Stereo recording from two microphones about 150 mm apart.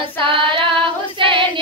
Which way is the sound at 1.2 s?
35° right (ahead or behind).